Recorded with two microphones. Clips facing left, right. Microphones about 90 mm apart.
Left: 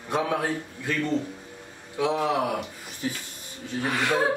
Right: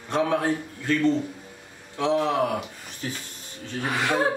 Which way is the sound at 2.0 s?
10° left (ahead or behind).